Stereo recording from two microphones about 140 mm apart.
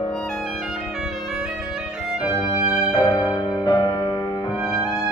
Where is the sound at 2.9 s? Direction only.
30° left (ahead or behind).